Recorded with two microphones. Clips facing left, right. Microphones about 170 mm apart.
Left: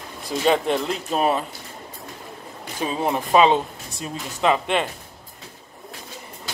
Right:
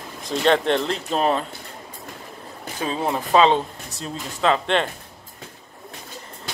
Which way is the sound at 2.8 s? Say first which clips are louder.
Left 1 dB; 15° left (ahead or behind).